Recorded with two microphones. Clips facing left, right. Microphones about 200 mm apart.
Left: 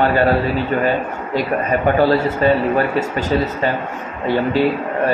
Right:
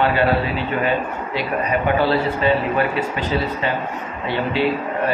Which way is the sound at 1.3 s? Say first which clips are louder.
Left 3 dB; 45° left (ahead or behind).